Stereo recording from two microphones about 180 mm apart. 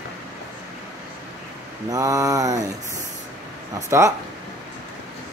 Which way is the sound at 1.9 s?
20° right (ahead or behind).